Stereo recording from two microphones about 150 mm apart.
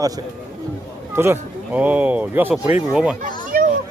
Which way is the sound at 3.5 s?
70° right (ahead or behind).